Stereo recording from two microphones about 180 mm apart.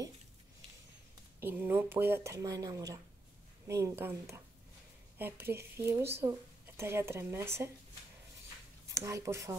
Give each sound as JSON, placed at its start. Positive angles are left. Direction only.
{"t": 1.4, "sound": "speech", "side_deg": -10}
{"t": 8.9, "sound": "speech", "side_deg": -15}